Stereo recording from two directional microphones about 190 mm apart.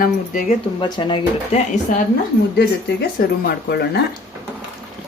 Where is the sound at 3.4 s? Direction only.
55° left (ahead or behind).